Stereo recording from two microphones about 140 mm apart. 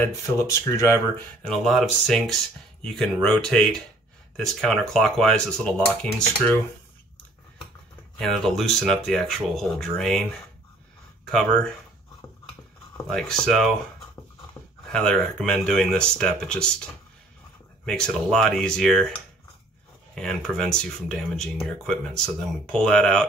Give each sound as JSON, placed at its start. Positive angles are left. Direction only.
{"t": 0.4, "sound": "speech", "side_deg": 20}
{"t": 1.4, "sound": "speech", "side_deg": 0}
{"t": 8.2, "sound": "speech", "side_deg": 5}
{"t": 11.2, "sound": "speech", "side_deg": 5}
{"t": 13.1, "sound": "speech", "side_deg": 5}
{"t": 14.9, "sound": "speech", "side_deg": 5}
{"t": 17.8, "sound": "speech", "side_deg": 5}
{"t": 20.2, "sound": "speech", "side_deg": 5}